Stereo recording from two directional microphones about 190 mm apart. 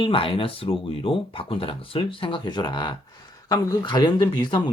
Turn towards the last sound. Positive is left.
turn(degrees=20)  # may be behind; listen again after turning